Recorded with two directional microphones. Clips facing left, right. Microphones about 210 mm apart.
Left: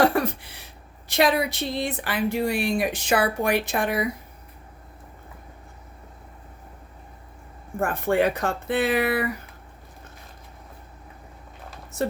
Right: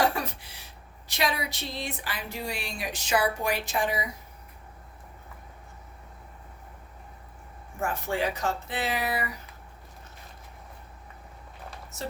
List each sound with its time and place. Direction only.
0.0 s a sound: 60° left (ahead or behind)
1.0 s speech: 55° left (ahead or behind)
7.8 s speech: 55° left (ahead or behind)
11.9 s speech: 55° left (ahead or behind)